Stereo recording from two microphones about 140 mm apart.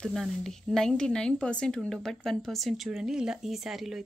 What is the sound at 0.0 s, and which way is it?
A woman's voice, centre (ahead or behind).